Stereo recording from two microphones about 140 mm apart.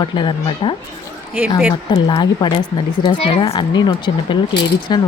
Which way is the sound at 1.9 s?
35° left (ahead or behind).